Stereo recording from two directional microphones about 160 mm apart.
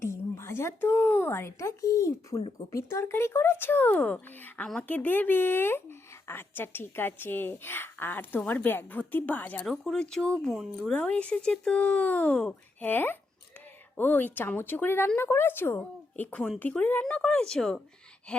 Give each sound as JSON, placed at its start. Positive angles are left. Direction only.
{"t": 0.0, "sound": "speech", "side_deg": 15}